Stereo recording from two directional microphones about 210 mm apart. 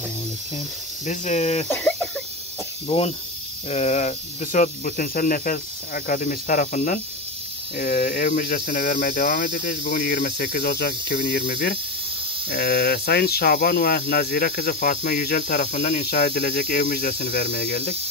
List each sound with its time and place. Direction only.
1.0 s speech: 35° left (ahead or behind)
1.7 s speech: 5° left (ahead or behind)
2.9 s speech: 25° left (ahead or behind)
7.7 s speech: 50° left (ahead or behind)